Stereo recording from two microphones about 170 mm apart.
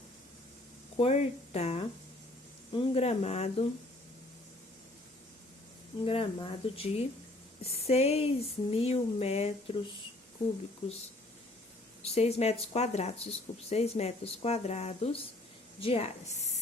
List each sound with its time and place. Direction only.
0.9 s speech: 35° left (ahead or behind)
6.1 s speech: 35° left (ahead or behind)
12.0 s speech: 40° left (ahead or behind)